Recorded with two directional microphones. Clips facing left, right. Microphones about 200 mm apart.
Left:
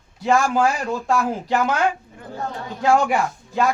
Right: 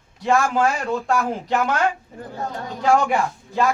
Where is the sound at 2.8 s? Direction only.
5° left (ahead or behind).